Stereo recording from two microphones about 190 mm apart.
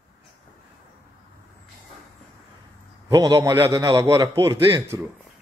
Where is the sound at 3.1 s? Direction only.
20° right (ahead or behind).